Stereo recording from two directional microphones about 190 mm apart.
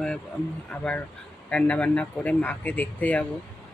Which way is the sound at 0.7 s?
5° left (ahead or behind).